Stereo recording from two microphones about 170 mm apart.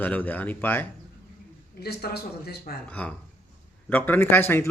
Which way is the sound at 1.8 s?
70° left (ahead or behind).